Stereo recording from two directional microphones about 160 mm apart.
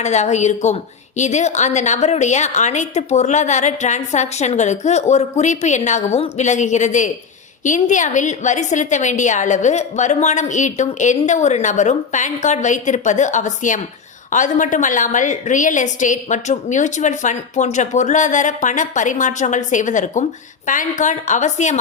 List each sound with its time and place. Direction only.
0.0 s a woman's voice: 45° left (ahead or behind)